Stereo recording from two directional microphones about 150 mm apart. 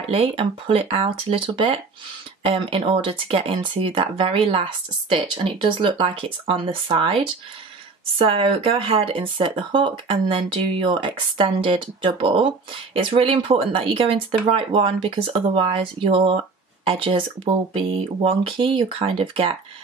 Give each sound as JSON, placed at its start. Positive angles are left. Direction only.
{"t": 0.1, "sound": "speech", "side_deg": -40}